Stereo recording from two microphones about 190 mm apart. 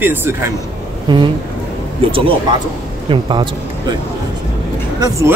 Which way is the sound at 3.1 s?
25° right (ahead or behind).